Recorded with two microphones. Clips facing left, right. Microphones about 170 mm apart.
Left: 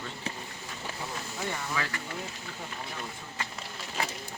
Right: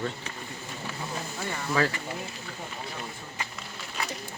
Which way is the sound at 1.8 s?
40° right (ahead or behind).